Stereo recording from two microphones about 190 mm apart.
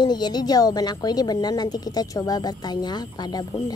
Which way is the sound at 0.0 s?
20° left (ahead or behind).